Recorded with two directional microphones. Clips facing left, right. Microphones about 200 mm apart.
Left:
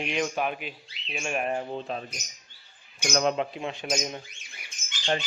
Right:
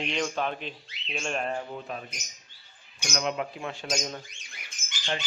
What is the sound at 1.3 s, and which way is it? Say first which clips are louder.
Speech: left 3 dB; 15° left (ahead or behind).